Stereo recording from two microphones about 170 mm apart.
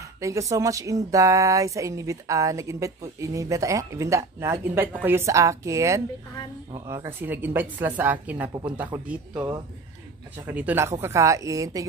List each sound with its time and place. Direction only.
0.0 s a woman's voice: 20° right (ahead or behind)